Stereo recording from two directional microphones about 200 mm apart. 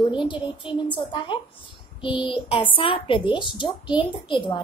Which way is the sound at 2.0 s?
25° left (ahead or behind).